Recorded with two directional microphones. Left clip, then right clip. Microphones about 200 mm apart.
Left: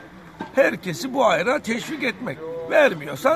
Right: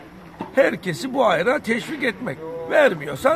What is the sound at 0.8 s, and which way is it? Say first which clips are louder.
A man's voice: even; 10° right (ahead or behind).